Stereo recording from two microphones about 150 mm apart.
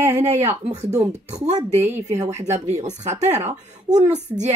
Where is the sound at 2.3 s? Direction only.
50° right (ahead or behind).